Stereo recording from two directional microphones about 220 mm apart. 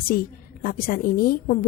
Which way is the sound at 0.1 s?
40° left (ahead or behind).